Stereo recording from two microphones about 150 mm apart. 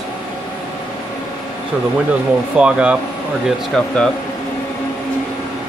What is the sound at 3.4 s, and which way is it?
Speech, 5° left (ahead or behind).